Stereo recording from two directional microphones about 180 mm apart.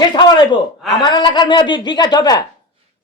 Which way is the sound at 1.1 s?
25° left (ahead or behind).